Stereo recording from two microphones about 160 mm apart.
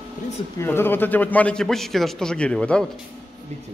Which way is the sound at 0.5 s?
15° left (ahead or behind).